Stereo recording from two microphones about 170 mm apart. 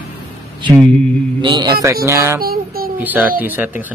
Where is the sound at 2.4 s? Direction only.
60° right (ahead or behind).